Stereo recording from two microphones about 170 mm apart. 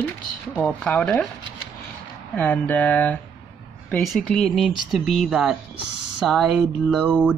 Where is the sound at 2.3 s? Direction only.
10° left (ahead or behind); by 7.3 s 5° right (ahead or behind).